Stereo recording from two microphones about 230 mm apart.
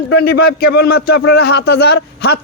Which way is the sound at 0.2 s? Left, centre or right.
Left.